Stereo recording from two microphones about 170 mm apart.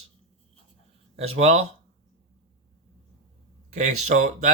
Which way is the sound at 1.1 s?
40° right (ahead or behind).